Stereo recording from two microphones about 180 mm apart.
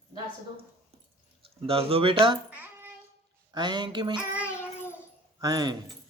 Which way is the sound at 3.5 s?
25° right (ahead or behind).